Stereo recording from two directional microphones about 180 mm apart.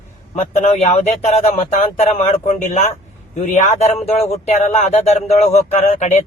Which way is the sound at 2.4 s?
45° left (ahead or behind).